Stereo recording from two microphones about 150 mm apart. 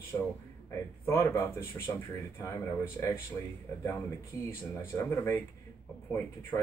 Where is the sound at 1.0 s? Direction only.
15° left (ahead or behind).